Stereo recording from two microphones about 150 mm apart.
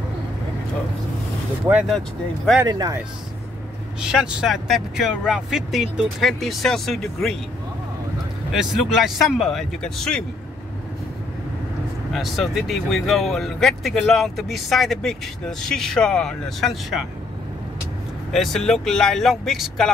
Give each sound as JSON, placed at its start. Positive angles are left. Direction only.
{"t": 2.6, "sound": "speech", "side_deg": -25}
{"t": 4.0, "sound": "speech", "side_deg": -5}
{"t": 8.5, "sound": "speech", "side_deg": 0}
{"t": 12.1, "sound": "speech", "side_deg": 0}
{"t": 18.3, "sound": "speech", "side_deg": 0}